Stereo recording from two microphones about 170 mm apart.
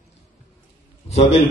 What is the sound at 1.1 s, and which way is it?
Speech, 40° left (ahead or behind).